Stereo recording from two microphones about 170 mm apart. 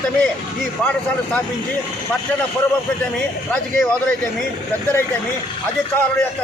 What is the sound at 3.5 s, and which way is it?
Speech, 10° left (ahead or behind).